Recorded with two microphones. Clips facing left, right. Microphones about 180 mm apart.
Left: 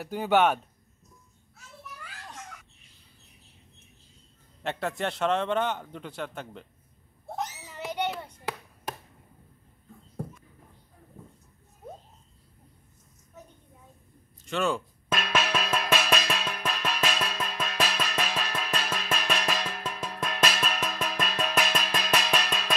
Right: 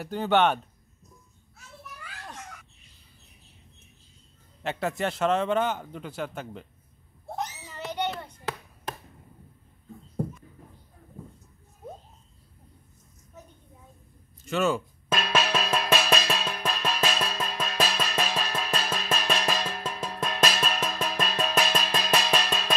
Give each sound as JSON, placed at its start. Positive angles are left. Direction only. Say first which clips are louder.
{"t": 0.0, "sound": "speech", "louder": "even", "side_deg": 10}
{"t": 4.6, "sound": "a man's voice", "louder": "right 2 dB", "side_deg": -5}
{"t": 7.3, "sound": "a sound", "louder": "even", "side_deg": 5}
{"t": 14.4, "sound": "speech", "louder": "right 2 dB", "side_deg": -5}
{"t": 15.0, "sound": "music", "louder": "right 2 dB", "side_deg": -35}